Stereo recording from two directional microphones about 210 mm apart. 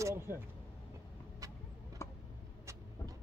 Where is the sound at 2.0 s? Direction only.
15° left (ahead or behind).